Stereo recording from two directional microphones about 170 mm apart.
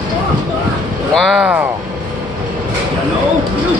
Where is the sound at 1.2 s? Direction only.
Centre (ahead or behind).